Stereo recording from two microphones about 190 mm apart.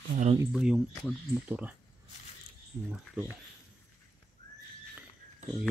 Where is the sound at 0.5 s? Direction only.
5° right (ahead or behind).